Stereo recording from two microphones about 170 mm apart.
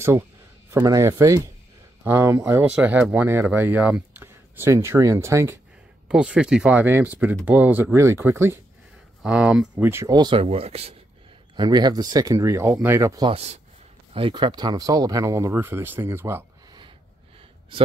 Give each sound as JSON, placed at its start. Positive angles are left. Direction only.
{"t": 0.7, "sound": "speech", "side_deg": -15}
{"t": 6.0, "sound": "speech", "side_deg": -5}
{"t": 11.5, "sound": "speech", "side_deg": -25}
{"t": 13.3, "sound": "speech", "side_deg": -35}